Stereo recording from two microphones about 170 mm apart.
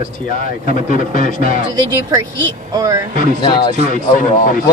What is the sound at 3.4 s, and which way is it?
Speech, 25° left (ahead or behind).